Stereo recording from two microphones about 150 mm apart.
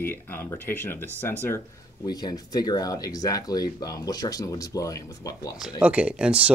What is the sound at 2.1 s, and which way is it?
Speech, 25° left (ahead or behind).